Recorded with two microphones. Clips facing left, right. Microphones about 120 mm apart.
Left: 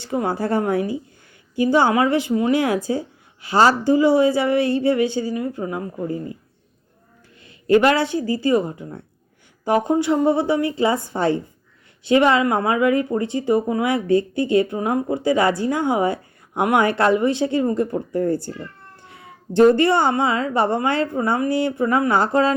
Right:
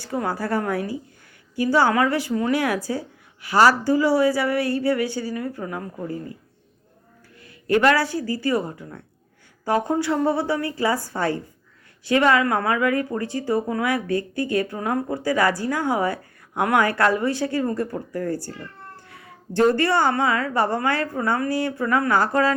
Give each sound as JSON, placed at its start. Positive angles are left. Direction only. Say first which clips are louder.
{"t": 0.0, "sound": "speech", "louder": "left 3 dB", "side_deg": 25}
{"t": 7.4, "sound": "speech", "louder": "left 3 dB", "side_deg": 20}